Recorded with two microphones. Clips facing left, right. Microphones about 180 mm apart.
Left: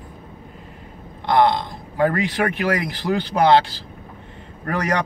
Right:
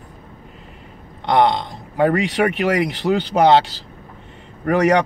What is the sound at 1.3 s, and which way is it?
Speech, 70° right (ahead or behind).